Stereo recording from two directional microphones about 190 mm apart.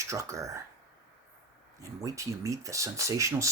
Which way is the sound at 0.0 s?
15° right (ahead or behind).